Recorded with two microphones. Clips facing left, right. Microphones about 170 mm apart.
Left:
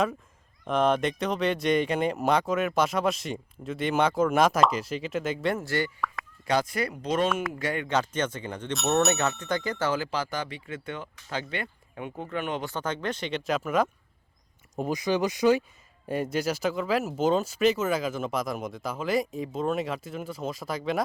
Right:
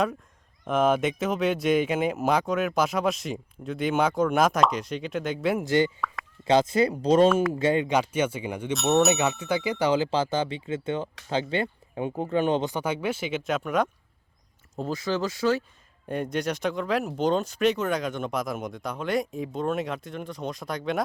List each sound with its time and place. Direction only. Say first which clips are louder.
0.6 s speech: right 1 dB; centre (ahead or behind)
5.5 s speech: right 6 dB; 20° right (ahead or behind)
7.9 s speech: right 3 dB; 10° right (ahead or behind); by 12.6 s 30° right (ahead or behind)
12.6 s speech: right 3 dB; 10° right (ahead or behind)
14.8 s speech: left 2 dB; 15° left (ahead or behind)
16.0 s speech: even; 5° left (ahead or behind)